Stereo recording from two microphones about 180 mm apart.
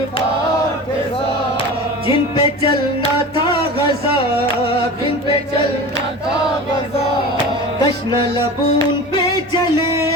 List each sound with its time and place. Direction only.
2.0 s music: 30° left (ahead or behind)